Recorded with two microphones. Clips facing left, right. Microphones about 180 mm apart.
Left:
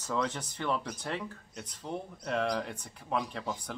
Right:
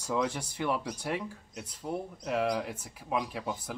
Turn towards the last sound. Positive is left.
turn(degrees=-5)  # may be behind; listen again after turning